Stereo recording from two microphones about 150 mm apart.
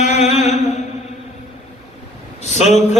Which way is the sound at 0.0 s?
50° left (ahead or behind).